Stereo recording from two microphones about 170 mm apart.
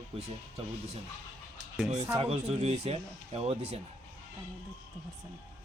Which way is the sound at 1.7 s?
Centre (ahead or behind).